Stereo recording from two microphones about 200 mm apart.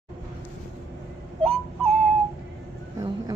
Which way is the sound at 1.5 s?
5° left (ahead or behind).